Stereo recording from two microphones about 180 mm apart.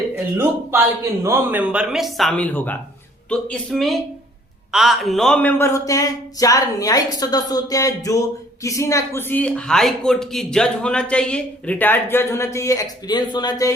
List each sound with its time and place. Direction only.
1.2 s a man's voice: 15° right (ahead or behind); by 13.7 s 20° left (ahead or behind)